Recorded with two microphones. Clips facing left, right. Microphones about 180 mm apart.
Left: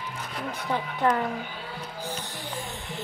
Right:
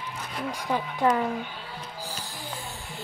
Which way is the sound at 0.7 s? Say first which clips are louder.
Right 1 dB; 15° right (ahead or behind).